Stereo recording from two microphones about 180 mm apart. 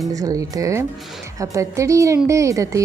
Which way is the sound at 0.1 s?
20° right (ahead or behind).